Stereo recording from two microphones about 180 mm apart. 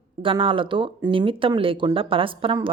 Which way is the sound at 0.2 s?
30° right (ahead or behind).